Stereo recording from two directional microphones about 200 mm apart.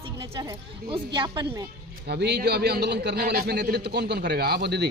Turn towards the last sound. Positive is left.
turn(degrees=-55)  # may be behind; listen again after turning